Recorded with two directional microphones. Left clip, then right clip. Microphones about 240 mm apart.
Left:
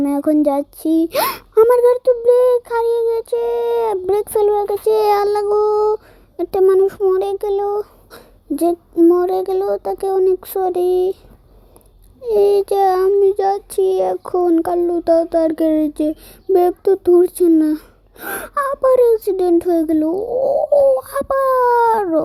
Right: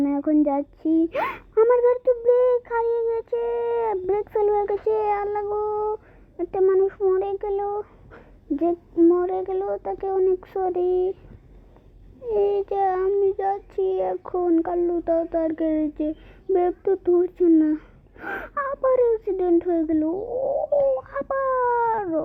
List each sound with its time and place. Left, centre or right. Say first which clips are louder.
0.0 s speech: left 6 dB; left
12.3 s speech: left 8 dB; left